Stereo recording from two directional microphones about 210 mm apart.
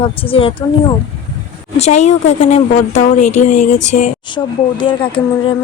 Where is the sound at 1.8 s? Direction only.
30° left (ahead or behind).